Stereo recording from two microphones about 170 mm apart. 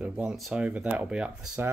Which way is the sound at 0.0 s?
5° right (ahead or behind).